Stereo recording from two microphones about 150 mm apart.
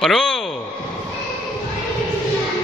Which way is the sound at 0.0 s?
Centre (ahead or behind).